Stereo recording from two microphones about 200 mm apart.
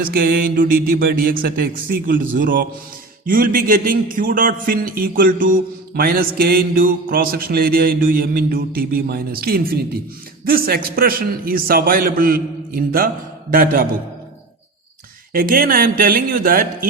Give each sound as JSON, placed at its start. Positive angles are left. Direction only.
{"t": 0.0, "sound": "a man's voice", "side_deg": -50}
{"t": 15.3, "sound": "a man's voice", "side_deg": -45}